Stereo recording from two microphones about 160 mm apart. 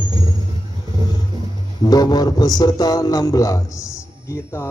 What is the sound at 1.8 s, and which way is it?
A man's voice, 25° left (ahead or behind).